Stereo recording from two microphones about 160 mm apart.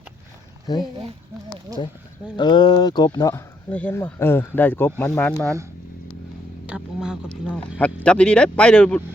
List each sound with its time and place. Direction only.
0.7 s speech: 25° left (ahead or behind)
2.3 s speech: 30° left (ahead or behind)
3.7 s speech: 10° left (ahead or behind)
6.7 s speech: 5° right (ahead or behind)
8.0 s speech: 5° left (ahead or behind)